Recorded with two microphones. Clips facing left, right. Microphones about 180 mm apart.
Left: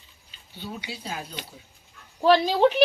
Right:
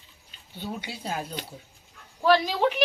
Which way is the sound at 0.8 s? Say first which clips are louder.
Right 2 dB; 50° right (ahead or behind).